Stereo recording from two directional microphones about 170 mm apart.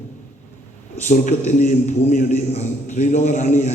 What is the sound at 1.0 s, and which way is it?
A man's voice, 50° left (ahead or behind).